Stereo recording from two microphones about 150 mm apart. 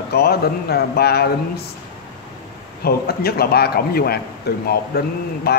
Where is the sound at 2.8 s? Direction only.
90° left.